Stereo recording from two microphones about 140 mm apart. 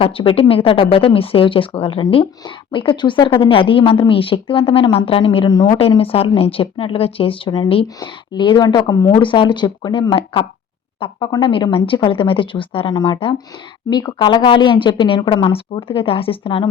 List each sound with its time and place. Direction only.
0.0 s speech: 40° left (ahead or behind)